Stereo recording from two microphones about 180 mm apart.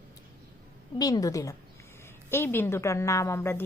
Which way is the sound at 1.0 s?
20° left (ahead or behind).